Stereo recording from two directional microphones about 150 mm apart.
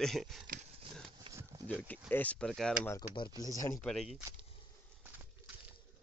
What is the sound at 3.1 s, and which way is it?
Speech, 30° left (ahead or behind).